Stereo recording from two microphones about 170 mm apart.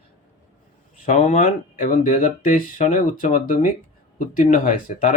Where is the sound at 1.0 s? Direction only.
45° left (ahead or behind).